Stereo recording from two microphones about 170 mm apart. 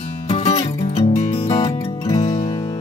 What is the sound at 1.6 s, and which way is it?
Music, 20° left (ahead or behind).